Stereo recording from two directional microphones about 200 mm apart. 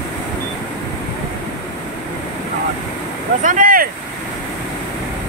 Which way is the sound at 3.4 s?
40° right (ahead or behind).